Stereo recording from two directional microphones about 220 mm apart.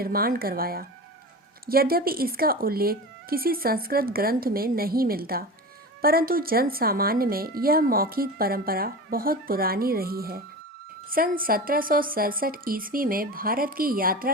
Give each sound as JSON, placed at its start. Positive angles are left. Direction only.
{"t": 0.0, "sound": "a woman's voice", "side_deg": -40}